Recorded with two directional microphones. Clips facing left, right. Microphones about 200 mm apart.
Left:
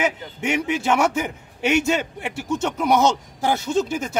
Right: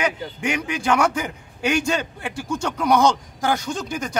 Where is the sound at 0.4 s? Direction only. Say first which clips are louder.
Left 3 dB; 25° left (ahead or behind).